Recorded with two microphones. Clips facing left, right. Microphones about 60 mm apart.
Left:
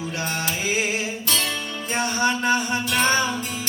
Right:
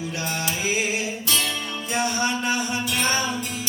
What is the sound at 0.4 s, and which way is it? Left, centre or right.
Music, left.